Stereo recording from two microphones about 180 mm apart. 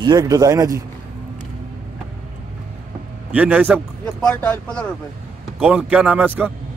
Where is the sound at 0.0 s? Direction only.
20° right (ahead or behind).